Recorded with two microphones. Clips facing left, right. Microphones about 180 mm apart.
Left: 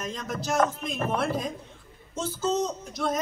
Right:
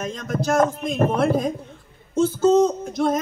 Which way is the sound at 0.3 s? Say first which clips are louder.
Right 6 dB; 55° right (ahead or behind).